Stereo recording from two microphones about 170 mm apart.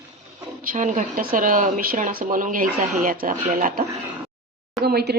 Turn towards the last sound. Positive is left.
turn(degrees=-65)  # may be behind; listen again after turning